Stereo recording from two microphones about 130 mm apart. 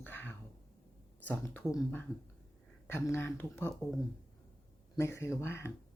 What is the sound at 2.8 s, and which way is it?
Speech, 15° left (ahead or behind).